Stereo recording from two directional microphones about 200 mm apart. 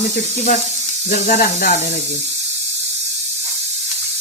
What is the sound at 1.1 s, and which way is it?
Speech, 45° left (ahead or behind).